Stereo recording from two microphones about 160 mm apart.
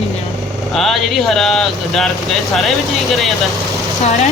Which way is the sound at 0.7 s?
Centre (ahead or behind).